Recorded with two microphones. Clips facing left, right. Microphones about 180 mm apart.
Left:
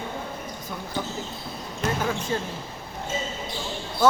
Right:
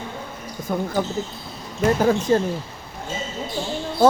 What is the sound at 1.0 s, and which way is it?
Speech, 55° right (ahead or behind).